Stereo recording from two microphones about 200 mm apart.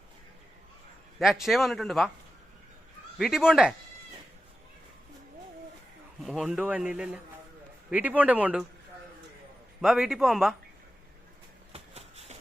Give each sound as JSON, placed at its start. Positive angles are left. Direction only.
{"t": 1.2, "sound": "a man's voice", "side_deg": 0}
{"t": 3.2, "sound": "a man's voice", "side_deg": 0}
{"t": 6.2, "sound": "a man's voice", "side_deg": 0}
{"t": 9.8, "sound": "a man's voice", "side_deg": 0}
{"t": 11.7, "sound": "a sound", "side_deg": -30}